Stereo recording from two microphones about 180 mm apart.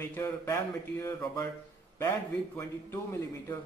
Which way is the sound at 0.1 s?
10° left (ahead or behind).